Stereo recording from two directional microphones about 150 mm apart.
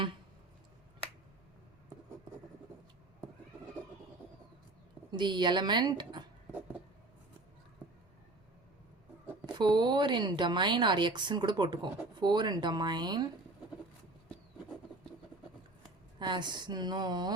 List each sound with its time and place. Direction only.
5.1 s speech: 30° right (ahead or behind)
9.6 s speech: 30° right (ahead or behind)
16.1 s speech: 30° right (ahead or behind)